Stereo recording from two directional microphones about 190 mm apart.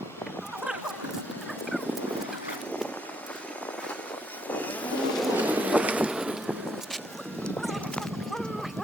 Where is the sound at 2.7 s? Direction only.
5° left (ahead or behind).